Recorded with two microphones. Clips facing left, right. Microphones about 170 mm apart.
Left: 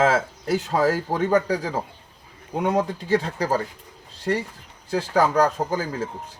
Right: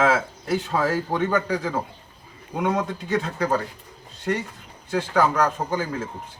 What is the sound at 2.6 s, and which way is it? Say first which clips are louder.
Speech: left 1 dB; 35° left (ahead or behind).